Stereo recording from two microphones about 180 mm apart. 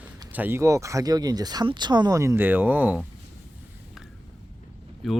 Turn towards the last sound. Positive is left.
turn(degrees=0)  # may be behind; listen again after turning